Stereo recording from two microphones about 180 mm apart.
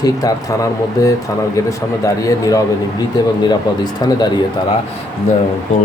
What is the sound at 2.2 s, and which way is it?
Speech, 20° left (ahead or behind).